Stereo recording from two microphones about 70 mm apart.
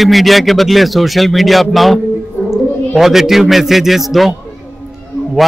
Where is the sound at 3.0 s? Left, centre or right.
Centre.